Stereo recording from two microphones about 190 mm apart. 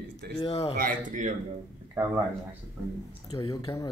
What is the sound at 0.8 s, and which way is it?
Speech, 45° right (ahead or behind).